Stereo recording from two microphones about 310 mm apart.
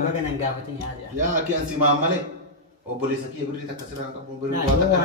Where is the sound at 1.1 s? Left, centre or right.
Right.